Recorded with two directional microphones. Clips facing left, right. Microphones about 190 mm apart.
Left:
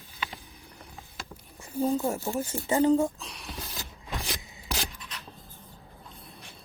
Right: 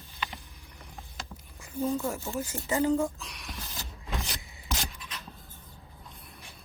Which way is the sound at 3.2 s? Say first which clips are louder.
Left 2 dB; 35° left (ahead or behind).